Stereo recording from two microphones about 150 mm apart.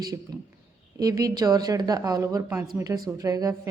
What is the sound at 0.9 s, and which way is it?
Speech, 25° right (ahead or behind).